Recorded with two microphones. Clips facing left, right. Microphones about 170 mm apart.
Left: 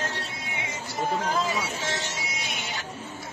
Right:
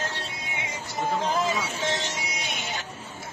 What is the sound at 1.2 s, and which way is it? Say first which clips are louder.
Chatter: right 3 dB; 20° right (ahead or behind).